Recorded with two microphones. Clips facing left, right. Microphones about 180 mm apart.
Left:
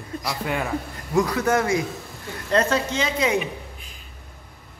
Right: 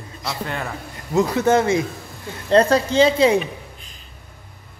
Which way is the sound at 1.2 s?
25° right (ahead or behind).